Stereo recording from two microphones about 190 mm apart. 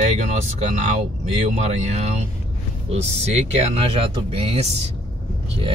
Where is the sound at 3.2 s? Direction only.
35° right (ahead or behind).